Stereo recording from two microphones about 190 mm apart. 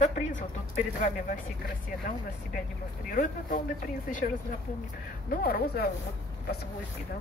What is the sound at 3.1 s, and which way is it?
Speech, 45° left (ahead or behind).